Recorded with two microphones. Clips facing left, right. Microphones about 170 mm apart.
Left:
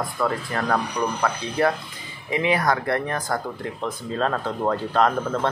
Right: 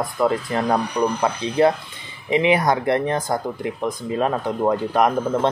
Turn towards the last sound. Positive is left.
turn(degrees=-15)  # may be behind; listen again after turning